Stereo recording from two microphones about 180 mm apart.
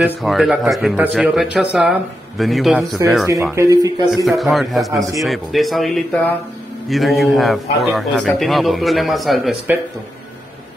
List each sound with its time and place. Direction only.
0.0 s speech: centre (ahead or behind)
3.5 s speech: 20° right (ahead or behind)
4.1 s speech: centre (ahead or behind)